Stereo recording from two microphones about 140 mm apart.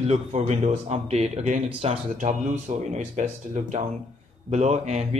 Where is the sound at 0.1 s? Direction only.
50° right (ahead or behind).